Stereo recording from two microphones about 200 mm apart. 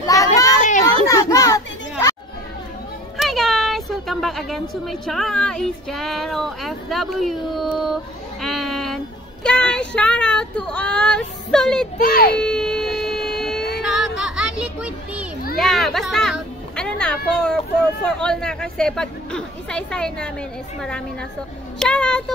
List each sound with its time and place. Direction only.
0.0 s children playing: 15° left (ahead or behind)
0.6 s a sound: 40° left (ahead or behind)
1.0 s children playing: 15° left (ahead or behind)
3.2 s speech: centre (ahead or behind)
12.0 s a child's voice: 50° left (ahead or behind)
12.4 s baby cry: 5° left (ahead or behind)
13.7 s music: centre (ahead or behind)
15.5 s a child's voice: centre (ahead or behind)
21.7 s a woman's voice: 5° left (ahead or behind)